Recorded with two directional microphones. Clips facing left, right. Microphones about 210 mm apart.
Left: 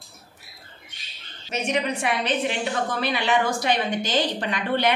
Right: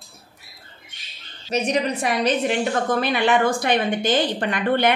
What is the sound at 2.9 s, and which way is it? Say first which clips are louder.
A woman's voice: right 5 dB; 50° right (ahead or behind).